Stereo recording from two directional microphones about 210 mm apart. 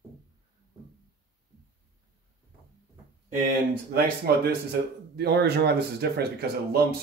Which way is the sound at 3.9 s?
50° right (ahead or behind).